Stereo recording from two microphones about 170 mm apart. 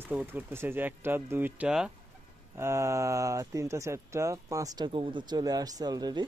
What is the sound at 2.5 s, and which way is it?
Speech, 15° right (ahead or behind).